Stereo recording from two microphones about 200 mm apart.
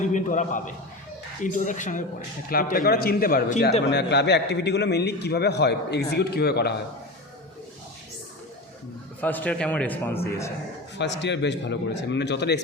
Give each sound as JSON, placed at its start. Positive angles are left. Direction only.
{"t": 0.0, "sound": "a man's voice", "side_deg": 40}
{"t": 9.2, "sound": "a man's voice", "side_deg": 5}
{"t": 10.9, "sound": "a man's voice", "side_deg": 60}